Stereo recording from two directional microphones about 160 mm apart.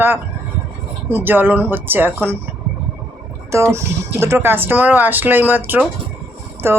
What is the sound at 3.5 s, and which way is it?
Speech, 15° right (ahead or behind).